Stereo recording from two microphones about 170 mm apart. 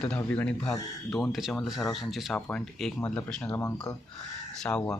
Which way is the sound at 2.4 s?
10° left (ahead or behind).